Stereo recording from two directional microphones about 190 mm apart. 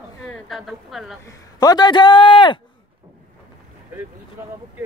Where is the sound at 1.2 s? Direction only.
20° left (ahead or behind).